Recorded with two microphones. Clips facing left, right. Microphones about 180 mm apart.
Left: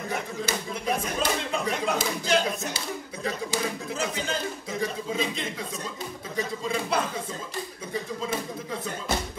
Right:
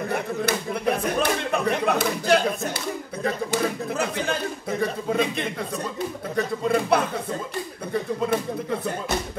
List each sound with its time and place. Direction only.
0.1 s speech: 60° right (ahead or behind)